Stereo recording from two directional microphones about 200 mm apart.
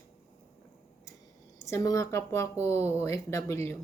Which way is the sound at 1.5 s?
15° left (ahead or behind).